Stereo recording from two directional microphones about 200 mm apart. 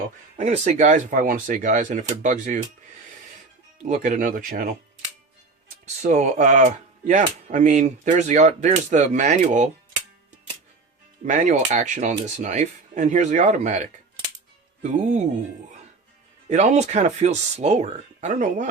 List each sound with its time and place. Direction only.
0.3 s speech: 35° right (ahead or behind)
3.8 s speech: 40° right (ahead or behind)
6.0 s speech: 40° right (ahead or behind)
11.3 s speech: 40° right (ahead or behind)
16.5 s speech: 35° right (ahead or behind)